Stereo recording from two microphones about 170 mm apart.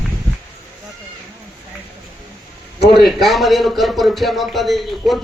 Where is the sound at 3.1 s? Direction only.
Centre (ahead or behind).